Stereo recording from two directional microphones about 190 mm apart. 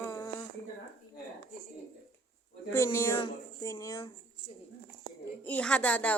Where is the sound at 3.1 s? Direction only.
25° left (ahead or behind).